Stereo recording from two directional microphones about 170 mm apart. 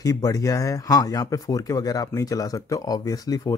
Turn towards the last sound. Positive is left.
turn(degrees=20)  # may be behind; listen again after turning